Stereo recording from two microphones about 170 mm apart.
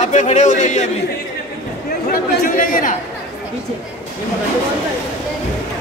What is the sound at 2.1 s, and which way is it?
Speech, 55° left (ahead or behind).